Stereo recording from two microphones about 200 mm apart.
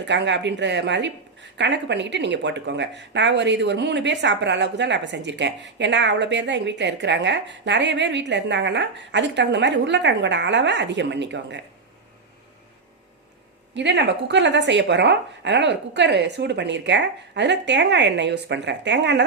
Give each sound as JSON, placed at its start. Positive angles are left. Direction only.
{"t": 0.0, "sound": "speech", "side_deg": -60}
{"t": 13.7, "sound": "speech", "side_deg": -60}